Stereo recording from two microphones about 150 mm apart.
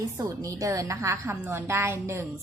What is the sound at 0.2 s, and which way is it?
A woman's voice, 20° right (ahead or behind).